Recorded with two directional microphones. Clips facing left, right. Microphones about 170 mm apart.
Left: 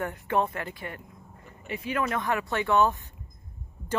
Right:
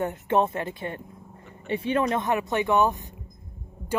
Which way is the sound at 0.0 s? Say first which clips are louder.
Right 4 dB; 25° right (ahead or behind).